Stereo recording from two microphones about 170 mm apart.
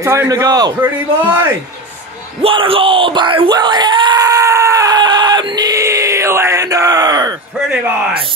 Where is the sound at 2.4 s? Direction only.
30° right (ahead or behind).